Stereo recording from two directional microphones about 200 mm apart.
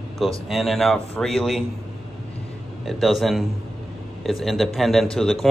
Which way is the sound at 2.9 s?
Centre (ahead or behind).